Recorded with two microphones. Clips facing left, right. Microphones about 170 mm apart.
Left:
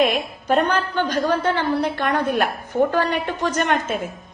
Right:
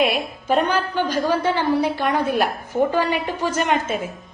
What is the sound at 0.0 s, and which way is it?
A woman's voice, 5° right (ahead or behind).